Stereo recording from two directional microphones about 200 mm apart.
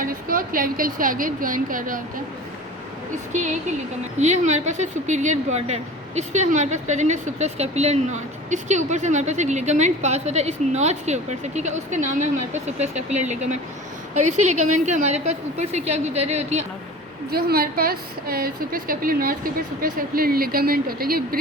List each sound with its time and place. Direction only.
0.0 s a woman's voice: 45° right (ahead or behind)
4.2 s a woman's voice: 35° right (ahead or behind)
14.3 s a woman's voice: 90° right
14.8 s a woman's voice: 35° right (ahead or behind)
17.3 s a woman's voice: 50° right (ahead or behind)